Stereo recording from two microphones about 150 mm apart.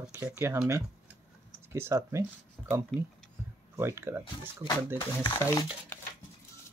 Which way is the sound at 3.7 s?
15° right (ahead or behind).